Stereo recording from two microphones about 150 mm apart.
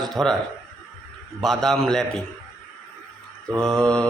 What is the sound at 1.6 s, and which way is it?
Speech, centre (ahead or behind).